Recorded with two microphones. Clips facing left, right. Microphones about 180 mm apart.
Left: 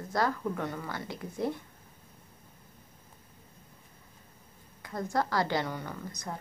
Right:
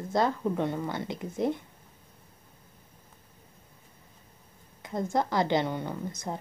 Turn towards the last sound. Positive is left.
turn(degrees=-25)  # may be behind; listen again after turning